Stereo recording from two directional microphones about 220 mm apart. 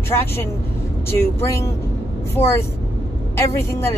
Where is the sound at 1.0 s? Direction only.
10° left (ahead or behind).